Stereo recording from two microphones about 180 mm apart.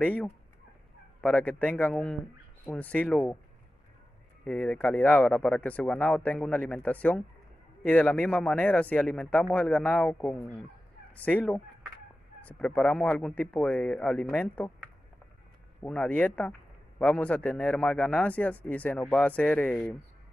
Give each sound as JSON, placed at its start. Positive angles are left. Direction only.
{"t": 0.0, "sound": "speech", "side_deg": 5}
{"t": 4.5, "sound": "speech", "side_deg": 5}
{"t": 15.8, "sound": "speech", "side_deg": 5}